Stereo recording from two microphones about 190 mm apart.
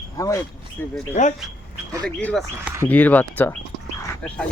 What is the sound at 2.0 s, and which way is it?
Speech, 5° left (ahead or behind).